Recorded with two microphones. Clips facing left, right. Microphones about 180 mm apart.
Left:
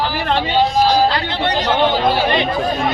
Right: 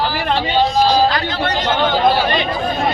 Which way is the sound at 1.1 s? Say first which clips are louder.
Even; 30° left (ahead or behind).